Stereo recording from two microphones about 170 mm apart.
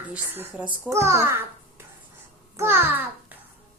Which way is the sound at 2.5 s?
15° right (ahead or behind).